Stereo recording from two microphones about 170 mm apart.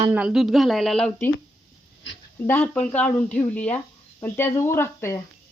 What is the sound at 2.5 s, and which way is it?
Speech, 10° left (ahead or behind).